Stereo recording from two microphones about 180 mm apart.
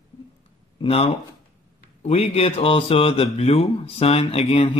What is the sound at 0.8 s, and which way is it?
Speech, 30° left (ahead or behind).